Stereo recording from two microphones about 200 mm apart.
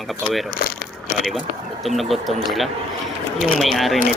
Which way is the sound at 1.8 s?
Centre (ahead or behind).